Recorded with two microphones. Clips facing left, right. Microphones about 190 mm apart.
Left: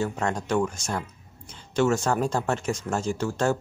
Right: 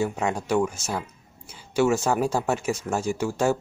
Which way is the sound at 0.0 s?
10° right (ahead or behind).